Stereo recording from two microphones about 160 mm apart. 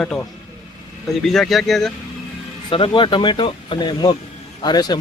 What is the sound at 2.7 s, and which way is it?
Speech, 30° left (ahead or behind).